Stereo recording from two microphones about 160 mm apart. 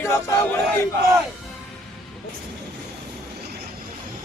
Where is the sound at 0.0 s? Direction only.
15° left (ahead or behind).